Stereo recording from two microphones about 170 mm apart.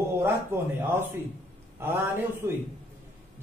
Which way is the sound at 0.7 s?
10° right (ahead or behind).